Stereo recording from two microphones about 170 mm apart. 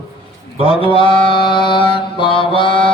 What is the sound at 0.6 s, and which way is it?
Mantra, 35° left (ahead or behind).